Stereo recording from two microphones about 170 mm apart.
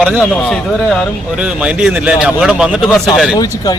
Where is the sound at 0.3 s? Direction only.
5° left (ahead or behind).